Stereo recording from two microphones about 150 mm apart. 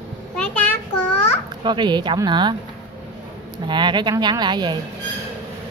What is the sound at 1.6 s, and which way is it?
Speech, 30° right (ahead or behind).